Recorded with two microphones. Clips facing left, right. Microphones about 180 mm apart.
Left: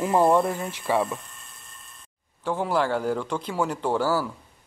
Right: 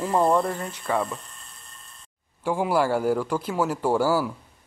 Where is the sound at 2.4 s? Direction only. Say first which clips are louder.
Right 2 dB; 10° right (ahead or behind).